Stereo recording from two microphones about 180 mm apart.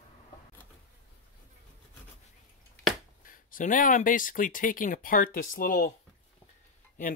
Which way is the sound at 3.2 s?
50° left (ahead or behind).